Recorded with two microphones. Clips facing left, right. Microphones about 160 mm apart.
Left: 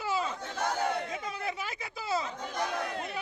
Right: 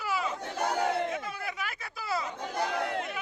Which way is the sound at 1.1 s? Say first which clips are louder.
Even; 25° left (ahead or behind).